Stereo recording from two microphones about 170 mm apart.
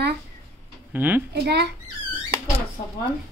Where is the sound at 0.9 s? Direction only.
10° right (ahead or behind).